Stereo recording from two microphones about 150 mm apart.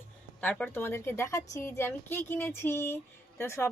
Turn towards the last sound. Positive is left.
turn(degrees=15)  # may be behind; listen again after turning